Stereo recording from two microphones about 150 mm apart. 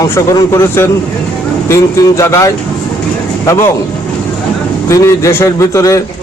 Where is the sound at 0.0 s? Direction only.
20° left (ahead or behind).